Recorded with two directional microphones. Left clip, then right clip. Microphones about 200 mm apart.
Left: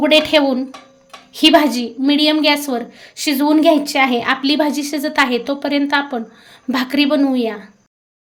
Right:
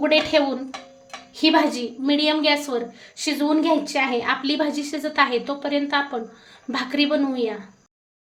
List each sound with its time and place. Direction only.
0.0 s a woman's voice: 50° left (ahead or behind)